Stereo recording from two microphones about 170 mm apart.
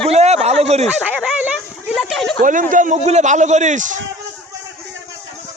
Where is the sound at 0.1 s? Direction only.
40° right (ahead or behind).